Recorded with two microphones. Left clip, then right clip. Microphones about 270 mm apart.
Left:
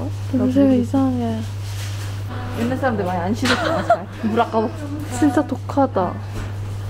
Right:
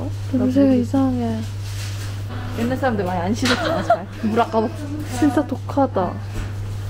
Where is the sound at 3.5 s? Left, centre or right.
Centre.